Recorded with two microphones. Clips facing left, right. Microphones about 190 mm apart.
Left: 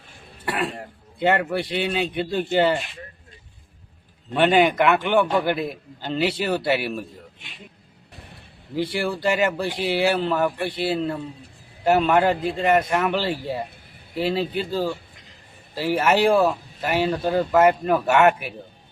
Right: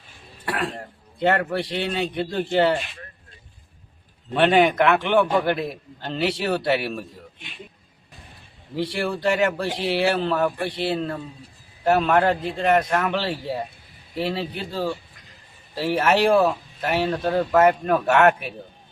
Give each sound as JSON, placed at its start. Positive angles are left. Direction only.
{"t": 1.2, "sound": "a man's voice", "side_deg": 5}
{"t": 4.4, "sound": "a man's voice", "side_deg": 0}
{"t": 8.1, "sound": "a sound", "side_deg": 65}
{"t": 8.7, "sound": "a man's voice", "side_deg": 5}